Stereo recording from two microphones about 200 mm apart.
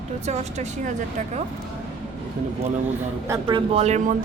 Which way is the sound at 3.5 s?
25° right (ahead or behind).